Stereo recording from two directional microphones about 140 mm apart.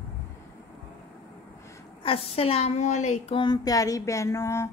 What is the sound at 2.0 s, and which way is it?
A woman's voice, 45° left (ahead or behind).